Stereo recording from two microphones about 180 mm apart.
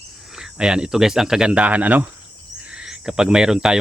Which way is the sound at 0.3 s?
5° right (ahead or behind).